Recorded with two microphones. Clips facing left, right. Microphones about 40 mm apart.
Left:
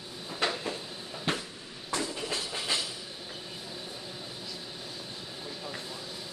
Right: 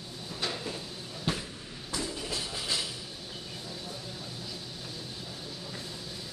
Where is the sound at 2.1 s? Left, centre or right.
Left.